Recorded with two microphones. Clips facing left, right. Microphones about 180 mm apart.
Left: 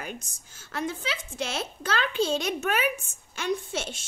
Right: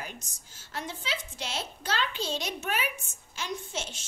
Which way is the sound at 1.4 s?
55° left (ahead or behind).